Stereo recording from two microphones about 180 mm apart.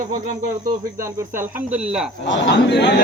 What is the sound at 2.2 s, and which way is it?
Speech, 90° left.